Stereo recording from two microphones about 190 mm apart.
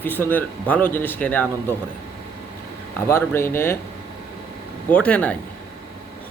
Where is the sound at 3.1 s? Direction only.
15° left (ahead or behind).